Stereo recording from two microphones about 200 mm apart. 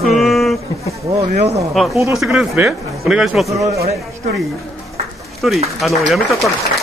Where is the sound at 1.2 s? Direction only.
35° right (ahead or behind).